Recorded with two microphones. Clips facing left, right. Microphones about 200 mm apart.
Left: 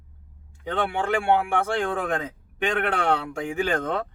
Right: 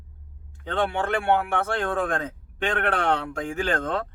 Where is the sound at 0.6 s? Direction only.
10° left (ahead or behind).